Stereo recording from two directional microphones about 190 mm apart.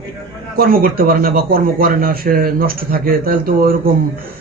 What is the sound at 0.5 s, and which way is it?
A man's voice, 50° right (ahead or behind).